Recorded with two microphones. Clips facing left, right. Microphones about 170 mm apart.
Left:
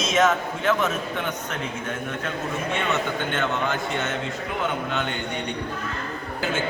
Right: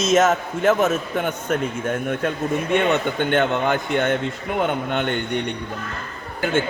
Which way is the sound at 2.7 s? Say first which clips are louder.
Right 7 dB; 60° right (ahead or behind).